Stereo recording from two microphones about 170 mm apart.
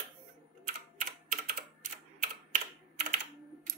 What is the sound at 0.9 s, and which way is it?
Typing, 50° right (ahead or behind).